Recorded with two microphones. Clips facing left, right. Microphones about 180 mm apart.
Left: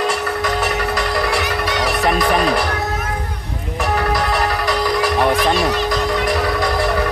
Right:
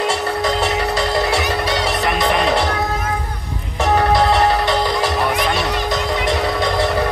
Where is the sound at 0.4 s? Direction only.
25° right (ahead or behind).